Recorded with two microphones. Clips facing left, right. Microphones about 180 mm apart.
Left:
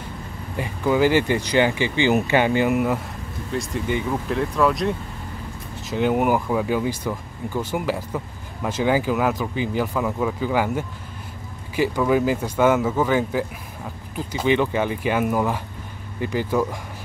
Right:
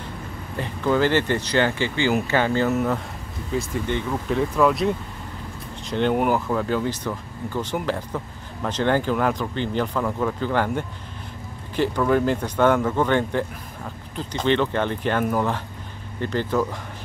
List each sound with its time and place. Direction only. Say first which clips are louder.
0.6 s speech: left 1 dB; 10° left (ahead or behind)
3.5 s speech: even; centre (ahead or behind)